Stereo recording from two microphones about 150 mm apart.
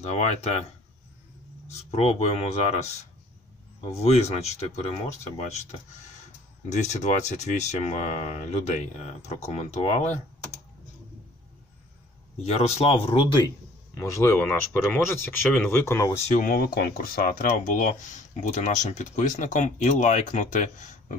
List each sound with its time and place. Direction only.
0.0 s speech: 45° left (ahead or behind)
1.7 s speech: 45° left (ahead or behind)
6.7 s speech: 50° left (ahead or behind)
12.4 s speech: 45° left (ahead or behind)
13.9 s speech: 20° left (ahead or behind)
16.3 s speech: 65° left (ahead or behind)